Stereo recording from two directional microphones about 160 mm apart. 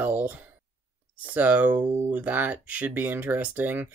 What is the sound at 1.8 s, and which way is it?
Speech, 25° right (ahead or behind).